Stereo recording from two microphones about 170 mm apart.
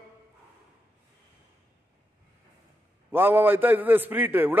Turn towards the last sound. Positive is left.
turn(degrees=-10)  # may be behind; listen again after turning